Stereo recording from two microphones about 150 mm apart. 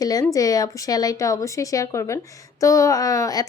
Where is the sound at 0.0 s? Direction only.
25° left (ahead or behind).